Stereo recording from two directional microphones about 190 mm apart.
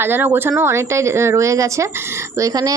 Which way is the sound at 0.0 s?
10° right (ahead or behind).